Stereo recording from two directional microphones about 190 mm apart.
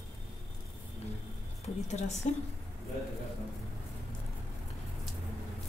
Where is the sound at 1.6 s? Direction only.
35° left (ahead or behind).